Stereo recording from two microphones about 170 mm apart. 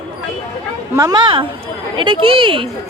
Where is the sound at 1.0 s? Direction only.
20° right (ahead or behind).